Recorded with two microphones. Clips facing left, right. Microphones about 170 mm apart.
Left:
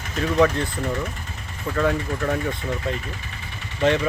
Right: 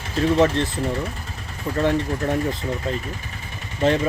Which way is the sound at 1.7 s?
30° right (ahead or behind).